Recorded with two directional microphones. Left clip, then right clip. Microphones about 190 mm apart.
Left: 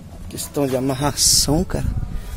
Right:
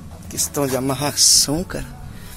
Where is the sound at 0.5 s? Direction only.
15° left (ahead or behind).